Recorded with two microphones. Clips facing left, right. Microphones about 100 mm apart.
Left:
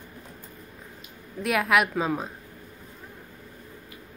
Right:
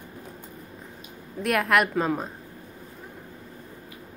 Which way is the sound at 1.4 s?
Centre (ahead or behind).